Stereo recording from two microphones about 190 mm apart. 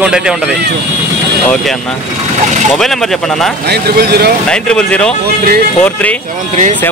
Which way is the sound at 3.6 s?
55° right (ahead or behind).